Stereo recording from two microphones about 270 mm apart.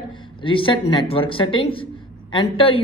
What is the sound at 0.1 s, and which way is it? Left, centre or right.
A woman's voice, centre.